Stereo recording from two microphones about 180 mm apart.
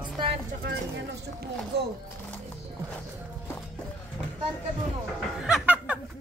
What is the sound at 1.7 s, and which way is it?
Speech, 65° right (ahead or behind).